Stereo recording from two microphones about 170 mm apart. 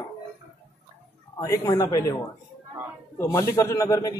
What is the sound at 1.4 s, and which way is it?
Speech, 20° left (ahead or behind).